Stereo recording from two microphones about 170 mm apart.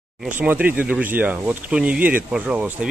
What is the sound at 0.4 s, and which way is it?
A man's voice, 10° right (ahead or behind).